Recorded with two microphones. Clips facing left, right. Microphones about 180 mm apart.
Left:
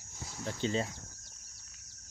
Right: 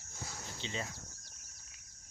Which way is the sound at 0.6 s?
45° left (ahead or behind).